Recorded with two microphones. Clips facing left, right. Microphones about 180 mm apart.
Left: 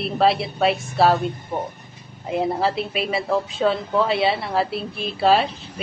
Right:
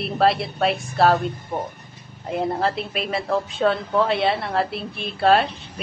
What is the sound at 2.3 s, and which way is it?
Speech, centre (ahead or behind).